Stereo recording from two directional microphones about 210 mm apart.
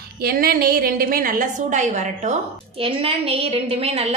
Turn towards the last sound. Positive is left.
turn(degrees=-30)  # may be behind; listen again after turning